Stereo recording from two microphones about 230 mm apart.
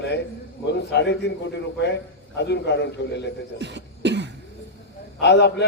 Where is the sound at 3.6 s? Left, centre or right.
Right.